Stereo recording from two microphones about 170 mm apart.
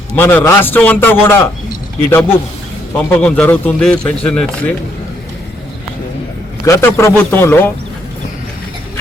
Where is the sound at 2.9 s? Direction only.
5° left (ahead or behind).